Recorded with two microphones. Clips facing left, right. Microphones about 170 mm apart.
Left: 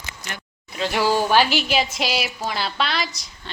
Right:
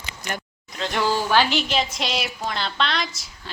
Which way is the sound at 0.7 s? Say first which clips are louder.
Left 3 dB; 5° left (ahead or behind).